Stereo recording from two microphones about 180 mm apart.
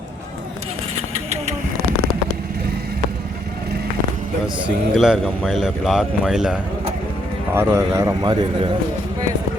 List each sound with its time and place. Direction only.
4.6 s speech: 5° right (ahead or behind)
7.5 s a man's voice: 15° right (ahead or behind)